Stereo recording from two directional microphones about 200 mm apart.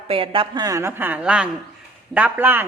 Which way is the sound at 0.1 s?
25° right (ahead or behind).